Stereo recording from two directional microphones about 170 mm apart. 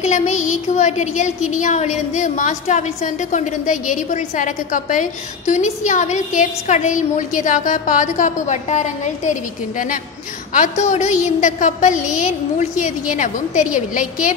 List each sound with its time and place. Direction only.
0.0 s speech: 45° left (ahead or behind)